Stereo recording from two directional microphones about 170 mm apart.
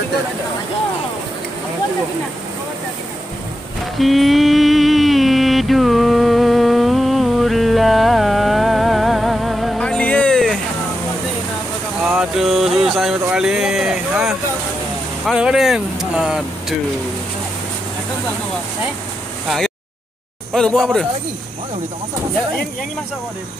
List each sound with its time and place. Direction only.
4.0 s mantra: centre (ahead or behind)
12.0 s music: 5° right (ahead or behind)
15.2 s vehicle: 5° right (ahead or behind)
20.5 s speech: 5° left (ahead or behind)